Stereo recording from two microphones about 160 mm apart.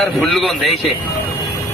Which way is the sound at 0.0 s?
Centre (ahead or behind).